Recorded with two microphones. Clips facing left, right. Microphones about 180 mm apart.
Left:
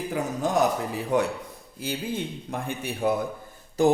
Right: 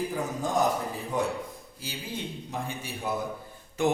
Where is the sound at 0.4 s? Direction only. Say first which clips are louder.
Left 3 dB; 70° left (ahead or behind).